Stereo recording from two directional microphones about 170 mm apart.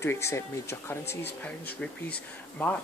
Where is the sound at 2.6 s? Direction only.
10° left (ahead or behind).